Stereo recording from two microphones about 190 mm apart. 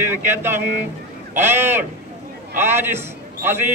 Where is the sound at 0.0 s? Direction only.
10° right (ahead or behind).